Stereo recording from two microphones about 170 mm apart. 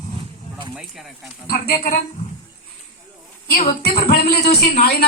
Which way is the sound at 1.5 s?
60° left (ahead or behind).